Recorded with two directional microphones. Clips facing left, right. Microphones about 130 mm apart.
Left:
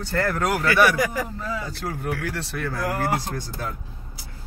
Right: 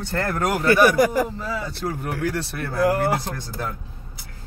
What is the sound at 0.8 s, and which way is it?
Speech, 35° right (ahead or behind).